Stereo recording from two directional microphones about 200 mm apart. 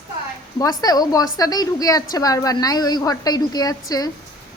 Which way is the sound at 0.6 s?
20° left (ahead or behind).